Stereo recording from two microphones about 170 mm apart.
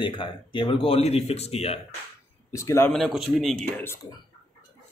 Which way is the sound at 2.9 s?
Centre (ahead or behind).